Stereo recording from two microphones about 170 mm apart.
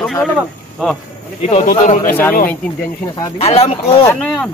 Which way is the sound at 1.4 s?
40° left (ahead or behind).